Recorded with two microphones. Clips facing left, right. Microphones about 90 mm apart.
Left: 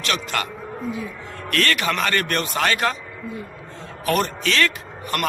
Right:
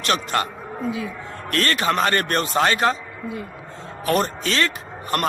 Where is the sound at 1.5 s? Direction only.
30° right (ahead or behind).